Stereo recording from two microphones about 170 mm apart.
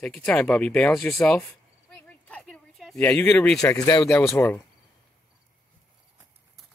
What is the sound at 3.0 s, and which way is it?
Speech, 10° left (ahead or behind).